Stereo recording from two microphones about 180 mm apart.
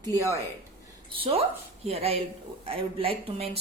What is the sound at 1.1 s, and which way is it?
A woman's voice, 30° right (ahead or behind).